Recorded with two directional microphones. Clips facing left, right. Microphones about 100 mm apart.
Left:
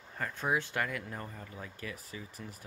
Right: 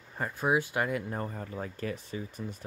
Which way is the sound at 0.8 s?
30° right (ahead or behind).